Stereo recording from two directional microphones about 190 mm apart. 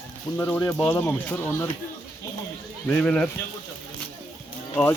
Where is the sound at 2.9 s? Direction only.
5° left (ahead or behind).